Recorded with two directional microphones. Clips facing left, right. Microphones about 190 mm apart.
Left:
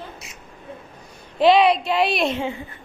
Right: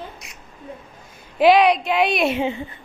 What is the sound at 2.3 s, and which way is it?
Speech, 20° right (ahead or behind).